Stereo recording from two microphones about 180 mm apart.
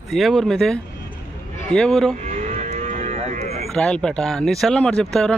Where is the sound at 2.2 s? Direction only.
40° right (ahead or behind).